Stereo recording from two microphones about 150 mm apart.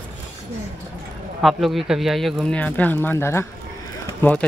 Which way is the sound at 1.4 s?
Centre (ahead or behind).